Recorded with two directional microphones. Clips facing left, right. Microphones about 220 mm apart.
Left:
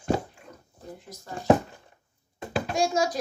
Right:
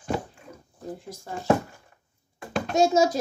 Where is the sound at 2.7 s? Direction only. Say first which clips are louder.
Right 6 dB; 25° right (ahead or behind).